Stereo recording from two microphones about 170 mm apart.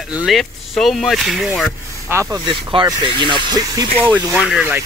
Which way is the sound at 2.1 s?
15° right (ahead or behind).